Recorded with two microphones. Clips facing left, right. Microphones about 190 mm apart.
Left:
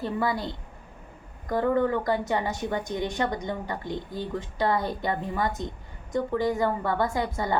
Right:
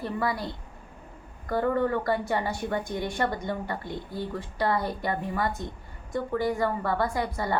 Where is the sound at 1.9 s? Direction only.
20° left (ahead or behind).